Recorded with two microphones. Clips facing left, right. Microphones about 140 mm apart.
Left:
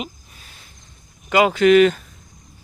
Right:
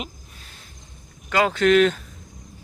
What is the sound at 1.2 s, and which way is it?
Speech, 15° left (ahead or behind).